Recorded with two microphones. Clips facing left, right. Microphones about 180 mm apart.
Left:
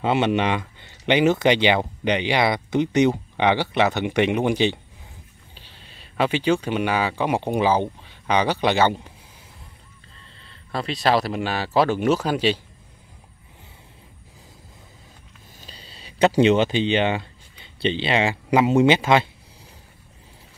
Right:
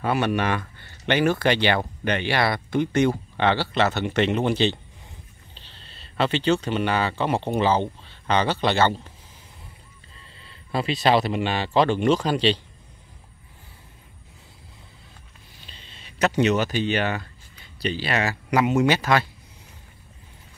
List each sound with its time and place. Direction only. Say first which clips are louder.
0.0 s speech: left 3 dB; 20° left (ahead or behind)
10.4 s speech: right 2 dB; 5° right (ahead or behind)
15.6 s speech: left 4 dB; 40° left (ahead or behind); by 19.2 s 20° left (ahead or behind)